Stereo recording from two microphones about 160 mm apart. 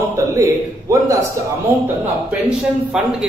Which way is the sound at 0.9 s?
20° right (ahead or behind).